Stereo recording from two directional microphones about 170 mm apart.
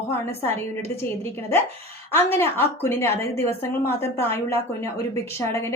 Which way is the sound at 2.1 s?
15° left (ahead or behind).